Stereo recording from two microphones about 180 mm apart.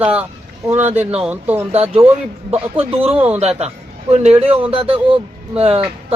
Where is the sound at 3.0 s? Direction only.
35° right (ahead or behind).